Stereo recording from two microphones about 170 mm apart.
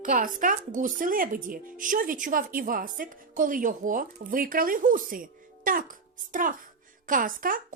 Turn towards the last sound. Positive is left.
turn(degrees=-55)  # may be behind; listen again after turning